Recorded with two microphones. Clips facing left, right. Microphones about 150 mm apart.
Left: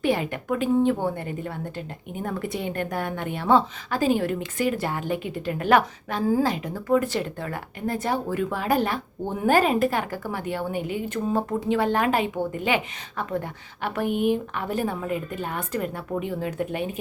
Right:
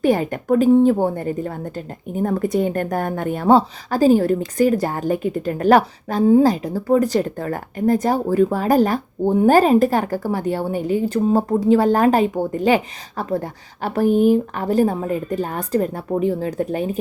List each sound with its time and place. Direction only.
0.0 s speech: 40° right (ahead or behind)